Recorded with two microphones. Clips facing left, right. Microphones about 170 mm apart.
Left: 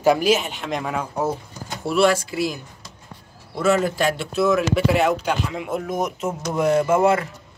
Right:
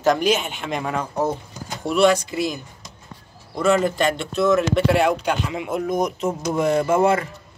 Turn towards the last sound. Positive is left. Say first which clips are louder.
# even
turn(degrees=0)  # may be behind; listen again after turning